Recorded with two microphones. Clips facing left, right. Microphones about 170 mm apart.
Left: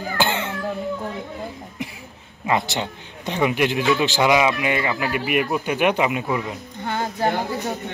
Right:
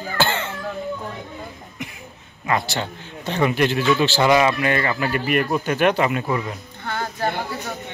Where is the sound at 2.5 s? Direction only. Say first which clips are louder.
Left 1 dB; 20° left (ahead or behind).